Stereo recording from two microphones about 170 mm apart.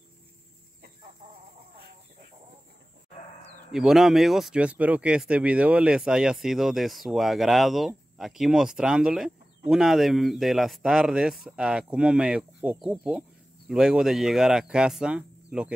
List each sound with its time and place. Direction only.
3.7 s speech: 5° right (ahead or behind)